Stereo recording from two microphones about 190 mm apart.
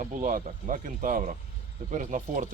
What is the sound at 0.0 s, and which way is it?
Speech, 45° right (ahead or behind).